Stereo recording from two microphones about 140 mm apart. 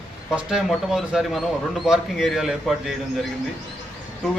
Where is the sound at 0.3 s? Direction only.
5° right (ahead or behind).